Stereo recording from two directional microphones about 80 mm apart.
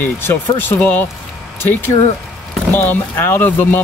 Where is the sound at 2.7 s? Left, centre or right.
Left.